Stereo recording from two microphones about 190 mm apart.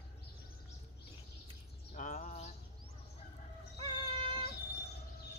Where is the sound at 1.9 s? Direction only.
40° left (ahead or behind).